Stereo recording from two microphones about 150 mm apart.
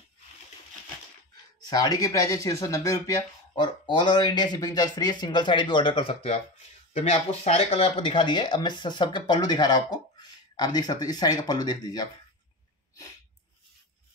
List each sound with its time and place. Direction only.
1.7 s speech: 25° left (ahead or behind)
3.5 s speech: 30° left (ahead or behind)